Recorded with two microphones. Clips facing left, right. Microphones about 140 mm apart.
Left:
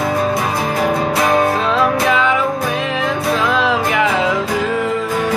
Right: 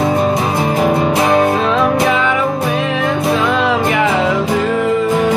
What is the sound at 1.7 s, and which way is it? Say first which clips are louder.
Music: right 2 dB; centre (ahead or behind).